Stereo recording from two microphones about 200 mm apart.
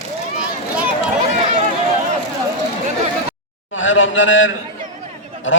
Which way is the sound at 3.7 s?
75° left (ahead or behind).